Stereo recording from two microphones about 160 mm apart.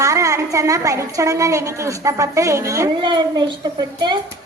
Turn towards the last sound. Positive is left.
turn(degrees=-25)  # may be behind; listen again after turning